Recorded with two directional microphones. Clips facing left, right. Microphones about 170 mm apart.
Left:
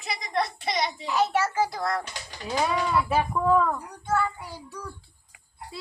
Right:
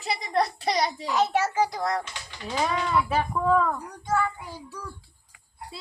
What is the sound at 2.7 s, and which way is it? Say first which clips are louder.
Speech: even; 5° left (ahead or behind).